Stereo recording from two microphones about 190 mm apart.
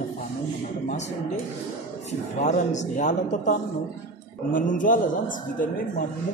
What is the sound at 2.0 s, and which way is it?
Speech, 40° left (ahead or behind).